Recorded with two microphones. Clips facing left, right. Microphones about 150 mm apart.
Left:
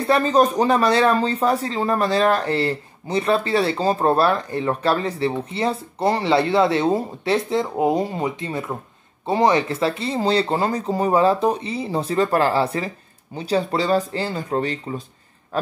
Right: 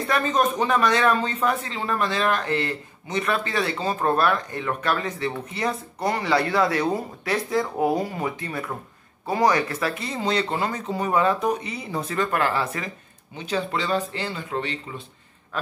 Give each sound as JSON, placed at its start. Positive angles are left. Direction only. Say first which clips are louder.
{"t": 0.0, "sound": "speech", "louder": "left 5 dB", "side_deg": 30}